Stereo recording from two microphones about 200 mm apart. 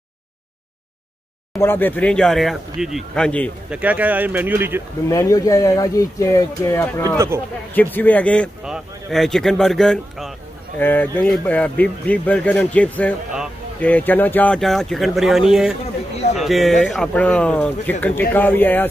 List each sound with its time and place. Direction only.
1.6 s speech: 10° left (ahead or behind)
3.7 s speech: 10° right (ahead or behind)
5.0 s speech: 15° left (ahead or behind)
7.2 s speech: 10° right (ahead or behind)
7.7 s speech: 10° left (ahead or behind)